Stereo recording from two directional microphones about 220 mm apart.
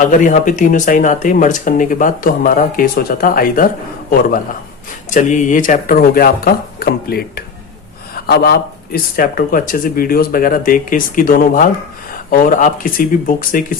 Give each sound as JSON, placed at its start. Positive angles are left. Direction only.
{"t": 0.0, "sound": "speech", "side_deg": 35}